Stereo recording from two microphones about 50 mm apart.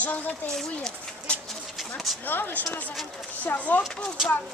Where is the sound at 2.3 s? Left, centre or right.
Left.